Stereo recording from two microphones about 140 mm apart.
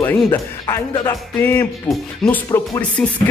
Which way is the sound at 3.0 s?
10° left (ahead or behind).